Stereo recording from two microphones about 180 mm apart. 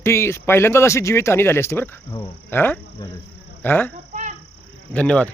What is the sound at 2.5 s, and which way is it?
Speech, 10° left (ahead or behind).